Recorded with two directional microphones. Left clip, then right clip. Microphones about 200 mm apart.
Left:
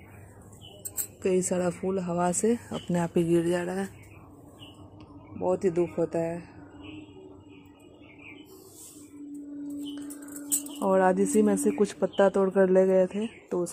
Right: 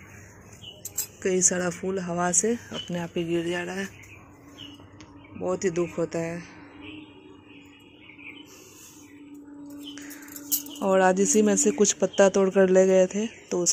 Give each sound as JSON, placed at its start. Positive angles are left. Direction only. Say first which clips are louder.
{"t": 1.2, "sound": "speech", "louder": "right 2 dB", "side_deg": 5}
{"t": 2.9, "sound": "speech", "louder": "left 4 dB", "side_deg": 35}
{"t": 5.4, "sound": "speech", "louder": "left 1 dB", "side_deg": 5}
{"t": 10.8, "sound": "speech", "louder": "right 2 dB", "side_deg": 0}